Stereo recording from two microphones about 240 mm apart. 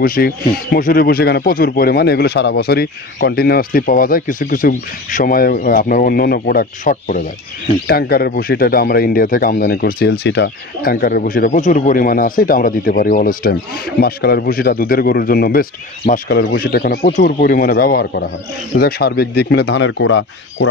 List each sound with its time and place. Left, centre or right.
0.0 s speech: left